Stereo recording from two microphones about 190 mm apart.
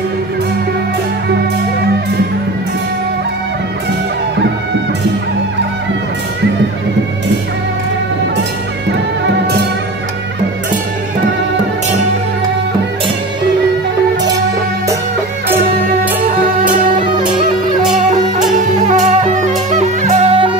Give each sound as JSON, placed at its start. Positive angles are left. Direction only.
{"t": 18.9, "sound": "music", "side_deg": -40}